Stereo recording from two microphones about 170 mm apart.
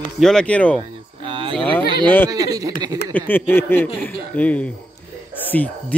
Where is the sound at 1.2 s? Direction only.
30° right (ahead or behind).